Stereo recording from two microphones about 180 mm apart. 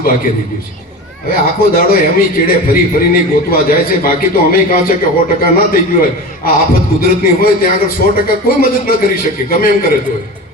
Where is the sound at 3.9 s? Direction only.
55° left (ahead or behind).